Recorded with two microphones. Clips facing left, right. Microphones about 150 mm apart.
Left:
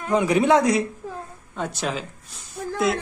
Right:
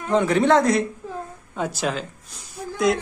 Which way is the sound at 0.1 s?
10° left (ahead or behind).